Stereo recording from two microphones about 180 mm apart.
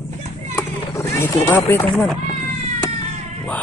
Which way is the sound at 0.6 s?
15° left (ahead or behind).